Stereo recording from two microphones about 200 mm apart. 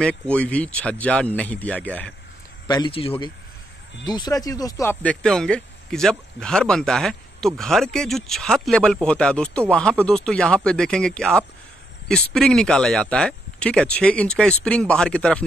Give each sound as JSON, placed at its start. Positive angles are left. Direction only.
{"t": 0.0, "sound": "speech", "side_deg": 5}
{"t": 2.7, "sound": "speech", "side_deg": 25}
{"t": 5.0, "sound": "speech", "side_deg": 5}